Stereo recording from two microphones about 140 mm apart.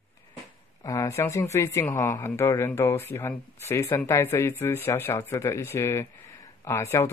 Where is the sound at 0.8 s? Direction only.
20° left (ahead or behind).